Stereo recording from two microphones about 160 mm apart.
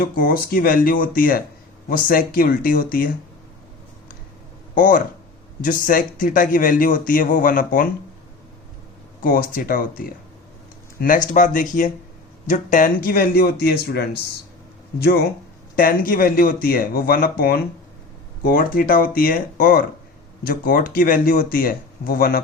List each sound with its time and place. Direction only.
0.0 s a man's voice: 65° left (ahead or behind)
4.7 s a man's voice: 55° left (ahead or behind)
9.2 s a man's voice: 60° left (ahead or behind)
11.3 s a man's voice: 55° left (ahead or behind); by 14.2 s 90° left
14.9 s a man's voice: 75° left (ahead or behind)
15.7 s a man's voice: 65° left (ahead or behind)
18.4 s a man's voice: 65° left (ahead or behind)